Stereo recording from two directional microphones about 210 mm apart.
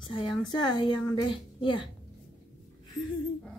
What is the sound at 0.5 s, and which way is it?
A woman's voice, 20° left (ahead or behind).